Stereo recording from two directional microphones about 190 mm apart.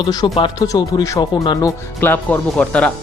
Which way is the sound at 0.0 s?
20° left (ahead or behind).